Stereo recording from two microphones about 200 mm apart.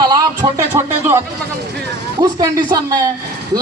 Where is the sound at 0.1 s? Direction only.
20° right (ahead or behind).